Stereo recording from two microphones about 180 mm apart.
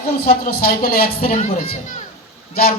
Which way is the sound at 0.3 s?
55° left (ahead or behind).